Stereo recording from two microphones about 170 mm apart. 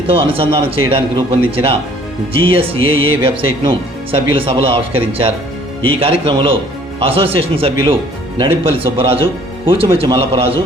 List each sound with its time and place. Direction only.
0.1 s speech: 30° right (ahead or behind)